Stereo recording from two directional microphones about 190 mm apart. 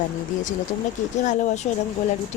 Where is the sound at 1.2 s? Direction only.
40° left (ahead or behind).